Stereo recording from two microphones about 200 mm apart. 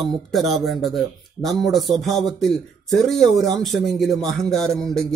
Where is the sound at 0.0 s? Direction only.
Centre (ahead or behind).